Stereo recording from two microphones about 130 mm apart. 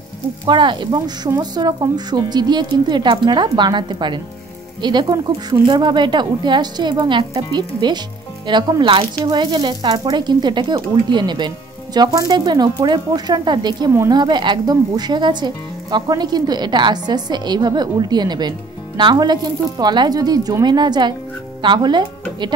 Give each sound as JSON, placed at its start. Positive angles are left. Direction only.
{"t": 0.5, "sound": "speech", "side_deg": -35}